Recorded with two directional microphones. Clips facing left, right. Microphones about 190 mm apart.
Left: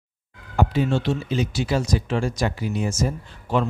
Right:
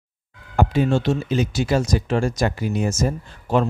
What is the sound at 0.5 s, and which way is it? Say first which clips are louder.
Speech: right 2 dB; 50° right (ahead or behind).